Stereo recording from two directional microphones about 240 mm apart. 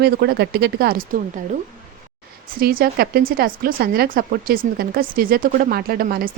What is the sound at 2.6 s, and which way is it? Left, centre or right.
Speech, right.